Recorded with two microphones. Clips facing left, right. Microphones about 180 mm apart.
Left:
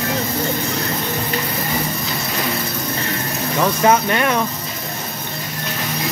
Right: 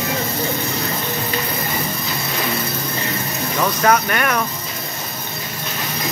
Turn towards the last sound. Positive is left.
turn(degrees=25)  # may be behind; listen again after turning